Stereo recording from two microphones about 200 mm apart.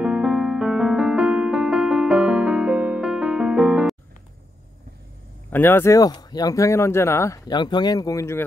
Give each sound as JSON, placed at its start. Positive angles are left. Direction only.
{"t": 0.0, "sound": "piano", "side_deg": -5}
{"t": 5.5, "sound": "speech", "side_deg": 10}